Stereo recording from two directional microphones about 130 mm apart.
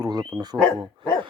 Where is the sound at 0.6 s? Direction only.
5° left (ahead or behind).